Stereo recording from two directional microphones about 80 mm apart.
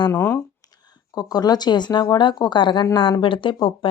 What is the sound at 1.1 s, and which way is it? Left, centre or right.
Speech, left.